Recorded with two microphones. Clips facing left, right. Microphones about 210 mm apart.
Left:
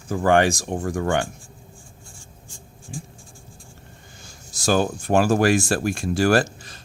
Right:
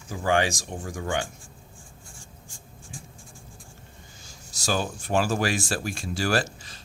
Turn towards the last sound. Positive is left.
turn(degrees=50)  # may be behind; listen again after turning